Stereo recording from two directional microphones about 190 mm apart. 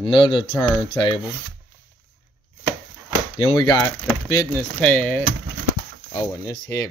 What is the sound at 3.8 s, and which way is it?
Wood, 5° left (ahead or behind).